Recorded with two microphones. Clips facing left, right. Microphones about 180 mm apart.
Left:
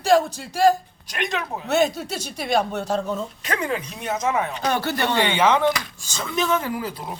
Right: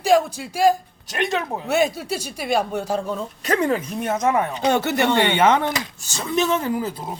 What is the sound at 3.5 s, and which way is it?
Speech, 40° right (ahead or behind).